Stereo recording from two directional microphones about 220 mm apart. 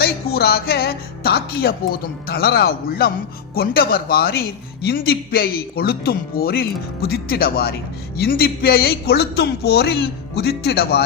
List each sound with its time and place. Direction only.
0.0 s speech: 45° left (ahead or behind)